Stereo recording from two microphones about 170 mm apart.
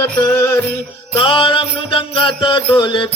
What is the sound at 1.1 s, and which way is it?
Music, 30° left (ahead or behind).